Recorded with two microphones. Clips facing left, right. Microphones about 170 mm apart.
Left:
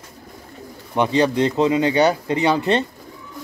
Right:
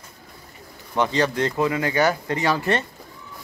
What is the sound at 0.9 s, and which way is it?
Speech, 15° left (ahead or behind).